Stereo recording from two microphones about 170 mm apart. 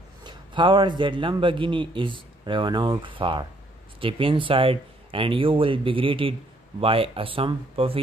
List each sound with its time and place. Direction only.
0.2 s a man's voice: 25° right (ahead or behind)